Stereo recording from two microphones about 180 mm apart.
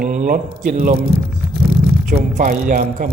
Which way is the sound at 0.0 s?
45° right (ahead or behind).